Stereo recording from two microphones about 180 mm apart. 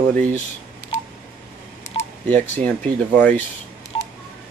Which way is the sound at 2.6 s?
10° left (ahead or behind).